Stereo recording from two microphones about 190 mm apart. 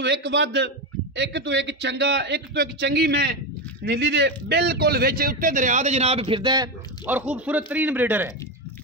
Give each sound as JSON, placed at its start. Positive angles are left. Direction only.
{"t": 0.0, "sound": "a man's voice", "side_deg": -65}
{"t": 7.1, "sound": "a man's voice", "side_deg": -10}